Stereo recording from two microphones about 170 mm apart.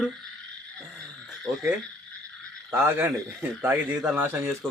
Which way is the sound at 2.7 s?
15° right (ahead or behind).